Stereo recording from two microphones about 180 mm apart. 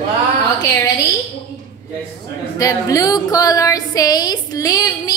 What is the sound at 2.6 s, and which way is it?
Speech, 20° left (ahead or behind).